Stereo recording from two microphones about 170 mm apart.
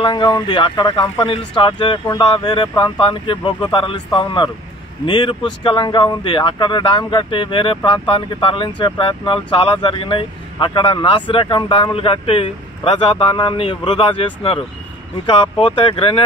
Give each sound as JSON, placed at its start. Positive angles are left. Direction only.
{"t": 0.0, "sound": "speech", "side_deg": 25}